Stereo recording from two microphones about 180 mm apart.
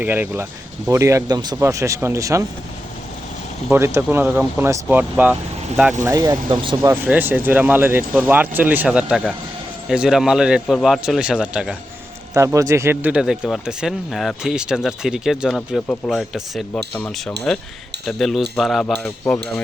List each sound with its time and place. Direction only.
0.0 s speech: 10° right (ahead or behind)
3.7 s speech: 15° right (ahead or behind)
6.0 s speech: 20° right (ahead or behind)
6.8 s speech: 15° right (ahead or behind)
12.3 s speech: 15° right (ahead or behind); by 18.9 s centre (ahead or behind)